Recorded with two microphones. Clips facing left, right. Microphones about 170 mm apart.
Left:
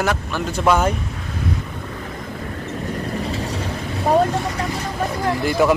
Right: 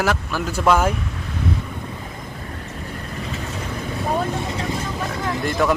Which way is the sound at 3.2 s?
35° left (ahead or behind).